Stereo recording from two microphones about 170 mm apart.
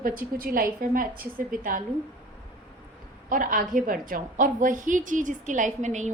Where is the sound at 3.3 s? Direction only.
55° right (ahead or behind).